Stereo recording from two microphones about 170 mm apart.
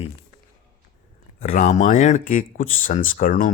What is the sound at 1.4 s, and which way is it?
Speech, 50° left (ahead or behind).